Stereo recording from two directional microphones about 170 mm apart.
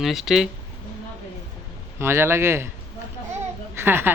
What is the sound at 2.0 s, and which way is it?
Speech, 15° right (ahead or behind).